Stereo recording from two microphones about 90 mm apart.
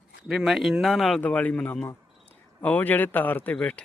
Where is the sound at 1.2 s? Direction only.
15° left (ahead or behind).